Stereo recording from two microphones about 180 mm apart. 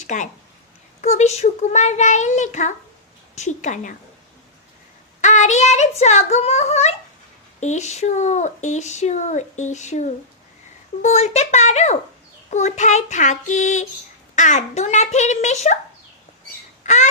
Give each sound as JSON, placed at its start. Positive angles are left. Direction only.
{"t": 0.0, "sound": "a woman's voice", "side_deg": 45}
{"t": 5.2, "sound": "speech", "side_deg": 40}
{"t": 16.8, "sound": "a sound", "side_deg": 40}